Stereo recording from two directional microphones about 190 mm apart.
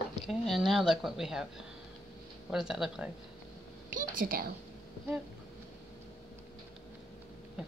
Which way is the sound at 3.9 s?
45° right (ahead or behind).